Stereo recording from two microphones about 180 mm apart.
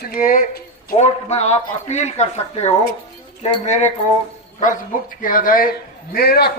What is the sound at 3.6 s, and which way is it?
Speech, 40° left (ahead or behind).